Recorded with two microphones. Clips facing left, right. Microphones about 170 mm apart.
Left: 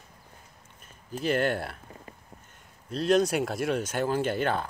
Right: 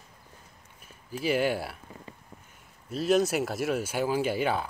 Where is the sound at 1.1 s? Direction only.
10° right (ahead or behind).